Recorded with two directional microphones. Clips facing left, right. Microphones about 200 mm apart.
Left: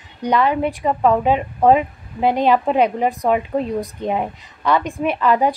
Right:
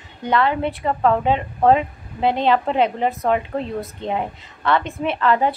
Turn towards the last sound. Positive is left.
turn(degrees=15)  # may be behind; listen again after turning